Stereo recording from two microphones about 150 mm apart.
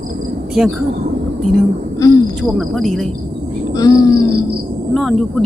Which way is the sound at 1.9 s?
25° left (ahead or behind).